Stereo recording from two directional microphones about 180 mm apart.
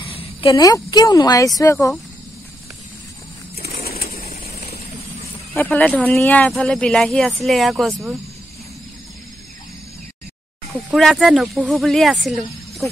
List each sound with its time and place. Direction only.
0.0 s speech: 30° left (ahead or behind)
3.8 s bird: 55° left (ahead or behind)
5.5 s speech: 10° left (ahead or behind)
10.7 s speech: centre (ahead or behind)